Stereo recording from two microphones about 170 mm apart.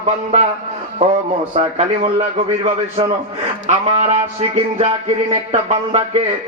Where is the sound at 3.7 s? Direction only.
40° right (ahead or behind).